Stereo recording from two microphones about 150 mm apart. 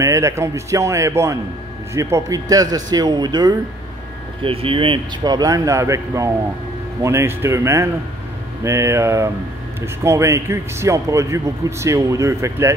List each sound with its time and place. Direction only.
0.0 s a man's voice: 20° right (ahead or behind)